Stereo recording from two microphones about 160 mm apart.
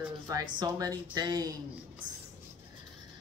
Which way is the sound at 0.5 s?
25° right (ahead or behind).